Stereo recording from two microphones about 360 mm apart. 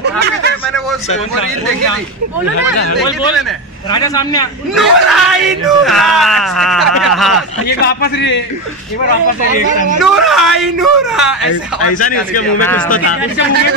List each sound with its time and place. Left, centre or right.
0.0 s a sound: right
3.9 s a man's voice: centre
4.7 s speech: centre
7.6 s a man's voice: left
10.0 s speech: centre
11.9 s a man's voice: left